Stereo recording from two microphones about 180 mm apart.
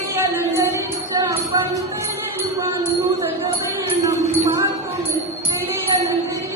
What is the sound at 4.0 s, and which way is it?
Wind chime, 15° right (ahead or behind).